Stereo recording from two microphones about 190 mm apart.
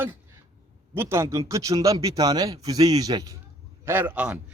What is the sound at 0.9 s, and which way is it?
A man's voice, 15° right (ahead or behind).